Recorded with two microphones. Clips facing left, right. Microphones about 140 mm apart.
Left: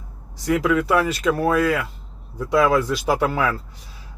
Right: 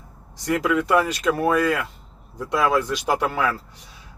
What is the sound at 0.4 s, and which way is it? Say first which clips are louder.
Speech: left 2 dB; centre (ahead or behind).